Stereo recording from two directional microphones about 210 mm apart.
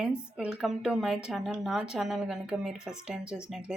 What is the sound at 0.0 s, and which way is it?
A woman's voice, 5° right (ahead or behind).